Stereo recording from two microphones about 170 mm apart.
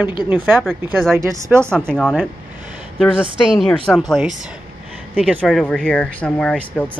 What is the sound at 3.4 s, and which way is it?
Speech, 5° right (ahead or behind).